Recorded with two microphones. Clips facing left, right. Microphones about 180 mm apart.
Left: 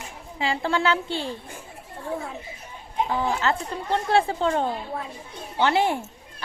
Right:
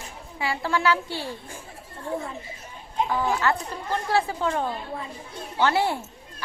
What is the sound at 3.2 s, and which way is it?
Speech, 25° left (ahead or behind).